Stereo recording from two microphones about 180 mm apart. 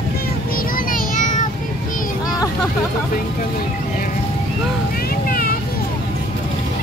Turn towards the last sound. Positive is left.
turn(degrees=55)  # may be behind; listen again after turning